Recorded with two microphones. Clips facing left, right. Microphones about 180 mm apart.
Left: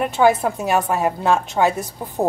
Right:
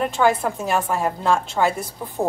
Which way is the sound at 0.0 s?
10° left (ahead or behind).